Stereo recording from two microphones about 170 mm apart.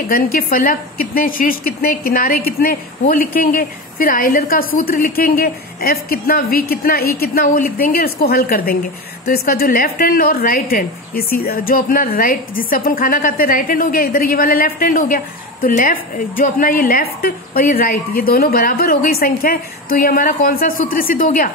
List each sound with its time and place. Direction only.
0.1 s a woman's voice: 55° left (ahead or behind)